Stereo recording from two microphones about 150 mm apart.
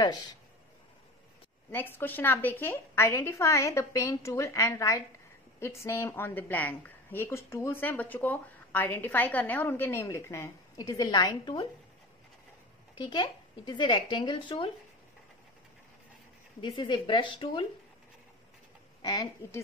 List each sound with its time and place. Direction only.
0.0 s a woman's voice: 30° left (ahead or behind)
1.7 s a woman's voice: 15° left (ahead or behind)
12.9 s speech: 30° left (ahead or behind)
16.6 s speech: 35° left (ahead or behind)
19.0 s a woman's voice: 25° left (ahead or behind)